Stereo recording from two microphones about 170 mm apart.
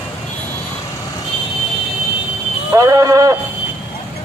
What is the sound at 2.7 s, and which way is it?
Speech, 20° right (ahead or behind).